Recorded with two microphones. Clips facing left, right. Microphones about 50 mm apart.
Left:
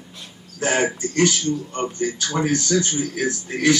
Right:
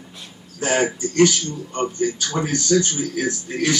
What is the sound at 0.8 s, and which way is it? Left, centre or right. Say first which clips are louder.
Speech: right 3 dB; centre.